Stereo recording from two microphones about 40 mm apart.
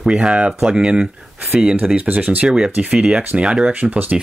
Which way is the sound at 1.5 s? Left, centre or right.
Centre.